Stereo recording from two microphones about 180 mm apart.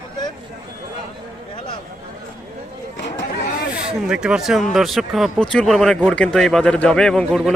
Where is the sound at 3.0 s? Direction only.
80° left.